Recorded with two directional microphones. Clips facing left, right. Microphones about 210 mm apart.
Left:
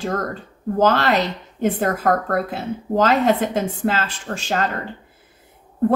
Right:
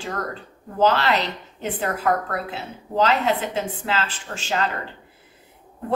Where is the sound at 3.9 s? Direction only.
50° left (ahead or behind).